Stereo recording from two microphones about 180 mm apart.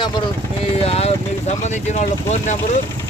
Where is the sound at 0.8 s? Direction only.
35° left (ahead or behind).